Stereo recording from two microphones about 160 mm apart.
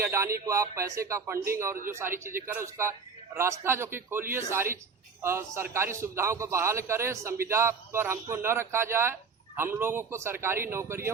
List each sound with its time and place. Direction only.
0.0 s a man's voice: 15° right (ahead or behind)